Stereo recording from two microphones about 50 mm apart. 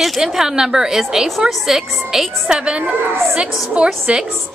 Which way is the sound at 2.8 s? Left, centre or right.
Right.